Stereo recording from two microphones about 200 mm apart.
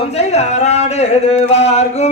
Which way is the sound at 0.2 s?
35° left (ahead or behind).